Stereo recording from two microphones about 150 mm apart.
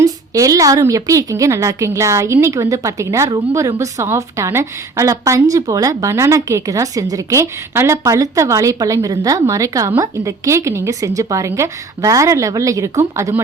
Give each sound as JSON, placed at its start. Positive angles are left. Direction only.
{"t": 0.0, "sound": "a woman's voice", "side_deg": -20}